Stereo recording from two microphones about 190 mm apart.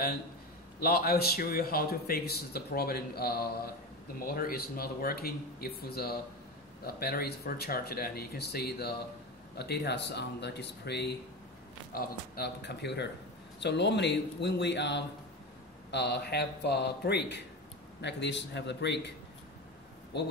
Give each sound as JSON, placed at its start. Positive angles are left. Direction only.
{"t": 0.7, "sound": "a man's voice", "side_deg": 50}